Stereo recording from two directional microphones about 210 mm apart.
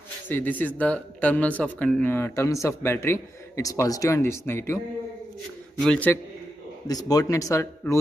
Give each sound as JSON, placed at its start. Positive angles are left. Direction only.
{"t": 0.3, "sound": "speech", "side_deg": 10}
{"t": 5.8, "sound": "a man's voice", "side_deg": 5}
{"t": 6.9, "sound": "speech", "side_deg": 15}